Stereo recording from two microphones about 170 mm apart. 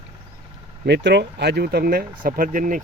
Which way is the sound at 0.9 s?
80° right.